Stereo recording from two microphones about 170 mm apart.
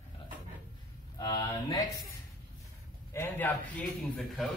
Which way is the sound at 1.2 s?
20° left (ahead or behind).